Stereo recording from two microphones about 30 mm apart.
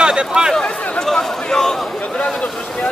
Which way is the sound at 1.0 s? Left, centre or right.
Centre.